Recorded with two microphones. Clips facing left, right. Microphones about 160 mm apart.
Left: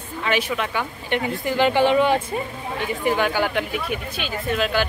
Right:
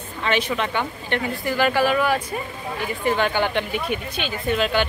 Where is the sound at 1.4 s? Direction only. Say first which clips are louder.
Left 2 dB; 20° left (ahead or behind).